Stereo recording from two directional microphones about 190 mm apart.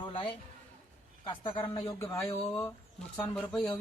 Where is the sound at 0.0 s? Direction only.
25° left (ahead or behind).